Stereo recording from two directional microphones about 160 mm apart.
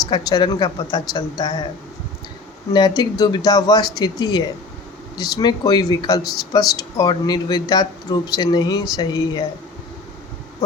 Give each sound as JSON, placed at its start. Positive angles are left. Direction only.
{"t": 0.1, "sound": "speech", "side_deg": 25}
{"t": 2.7, "sound": "speech", "side_deg": 25}